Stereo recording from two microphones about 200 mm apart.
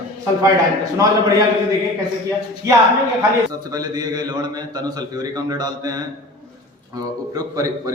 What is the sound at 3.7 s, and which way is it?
A man's voice, 20° right (ahead or behind).